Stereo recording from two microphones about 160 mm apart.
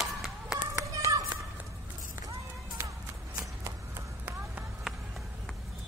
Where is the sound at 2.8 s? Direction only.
15° right (ahead or behind).